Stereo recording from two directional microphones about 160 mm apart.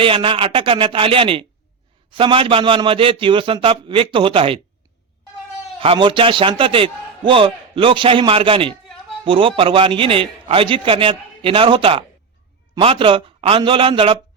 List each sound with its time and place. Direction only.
0.0 s a man's voice: 35° right (ahead or behind)
5.8 s a man's voice: 35° right (ahead or behind)